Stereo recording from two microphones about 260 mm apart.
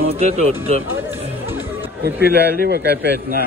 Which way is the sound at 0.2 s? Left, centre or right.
Right.